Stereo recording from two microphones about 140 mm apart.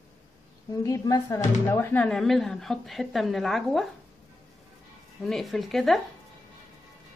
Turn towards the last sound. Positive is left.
turn(degrees=0)  # may be behind; listen again after turning